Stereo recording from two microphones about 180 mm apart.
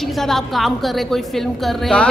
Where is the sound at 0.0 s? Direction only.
Centre (ahead or behind).